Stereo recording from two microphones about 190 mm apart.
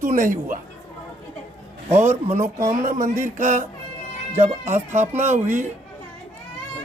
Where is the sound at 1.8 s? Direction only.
35° right (ahead or behind).